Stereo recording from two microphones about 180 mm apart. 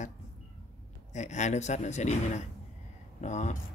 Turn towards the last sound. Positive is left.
turn(degrees=40)  # may be behind; listen again after turning